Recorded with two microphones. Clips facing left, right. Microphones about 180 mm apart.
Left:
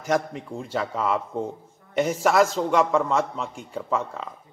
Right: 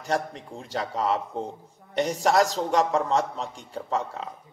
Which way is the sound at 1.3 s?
Centre (ahead or behind).